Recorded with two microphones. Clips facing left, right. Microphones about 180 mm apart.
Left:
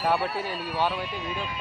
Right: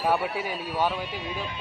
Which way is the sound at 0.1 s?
10° right (ahead or behind).